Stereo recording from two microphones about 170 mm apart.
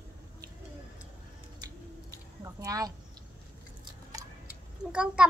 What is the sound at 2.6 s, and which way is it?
Speech, 20° right (ahead or behind).